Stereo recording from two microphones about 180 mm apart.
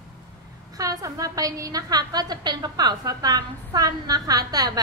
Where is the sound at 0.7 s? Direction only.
20° right (ahead or behind).